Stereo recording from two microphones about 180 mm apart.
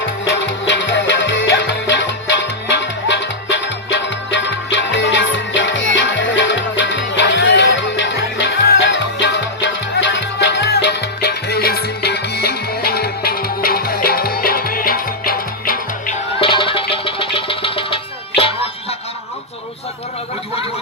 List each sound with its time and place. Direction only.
0.0 s music: 85° left; by 15.8 s 55° left (ahead or behind)
16.4 s music: 30° left (ahead or behind)